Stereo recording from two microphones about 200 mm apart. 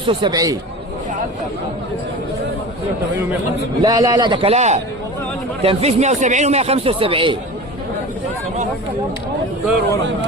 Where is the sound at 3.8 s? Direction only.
20° right (ahead or behind).